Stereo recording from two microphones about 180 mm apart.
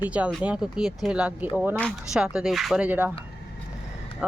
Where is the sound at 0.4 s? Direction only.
5° right (ahead or behind).